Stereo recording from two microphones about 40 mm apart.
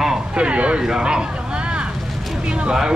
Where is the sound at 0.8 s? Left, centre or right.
Centre.